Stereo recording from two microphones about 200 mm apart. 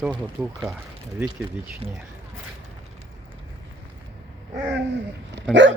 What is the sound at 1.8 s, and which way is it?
Speech, 30° right (ahead or behind).